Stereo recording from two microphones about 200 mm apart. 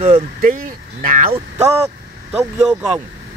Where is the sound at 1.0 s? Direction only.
40° right (ahead or behind).